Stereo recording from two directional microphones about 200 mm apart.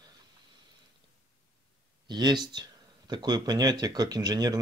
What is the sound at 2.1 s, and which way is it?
Speech, 20° right (ahead or behind).